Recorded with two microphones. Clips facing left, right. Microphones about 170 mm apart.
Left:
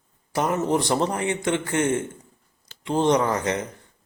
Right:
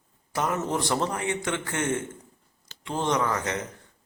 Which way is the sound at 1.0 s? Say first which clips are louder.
Left 4 dB; 30° left (ahead or behind).